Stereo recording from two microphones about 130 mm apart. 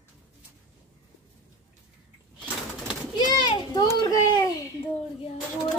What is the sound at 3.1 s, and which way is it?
A child's voice, 30° left (ahead or behind).